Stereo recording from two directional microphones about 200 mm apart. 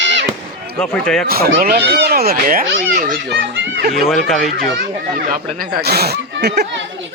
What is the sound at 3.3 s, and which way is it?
Children playing, 60° right (ahead or behind).